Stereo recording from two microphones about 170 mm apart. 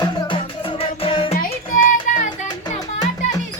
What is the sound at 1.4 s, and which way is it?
Music, 55° left (ahead or behind).